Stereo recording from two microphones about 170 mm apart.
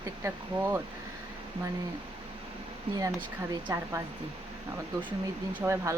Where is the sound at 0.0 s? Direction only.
20° right (ahead or behind).